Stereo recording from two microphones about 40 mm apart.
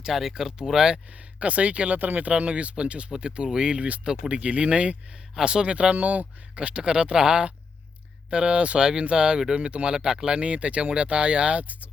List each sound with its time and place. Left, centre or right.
0.0 s speech: centre
1.4 s speech: right
2.0 s speech: right; by 5.6 s centre
5.6 s speech: right
6.6 s speech: right